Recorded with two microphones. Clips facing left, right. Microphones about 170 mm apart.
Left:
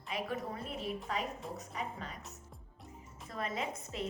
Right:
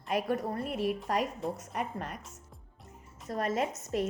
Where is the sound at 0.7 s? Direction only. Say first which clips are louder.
Right 8 dB; 75° right (ahead or behind).